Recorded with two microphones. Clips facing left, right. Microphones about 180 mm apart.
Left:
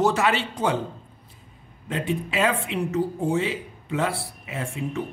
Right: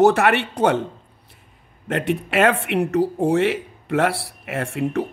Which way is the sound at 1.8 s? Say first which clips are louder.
Right 4 dB; 70° right (ahead or behind).